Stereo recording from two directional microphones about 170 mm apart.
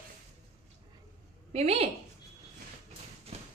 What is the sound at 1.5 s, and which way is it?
Speech, 35° right (ahead or behind).